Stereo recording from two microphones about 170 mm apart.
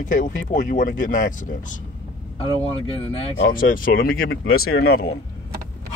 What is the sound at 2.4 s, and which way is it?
Speech, 30° left (ahead or behind).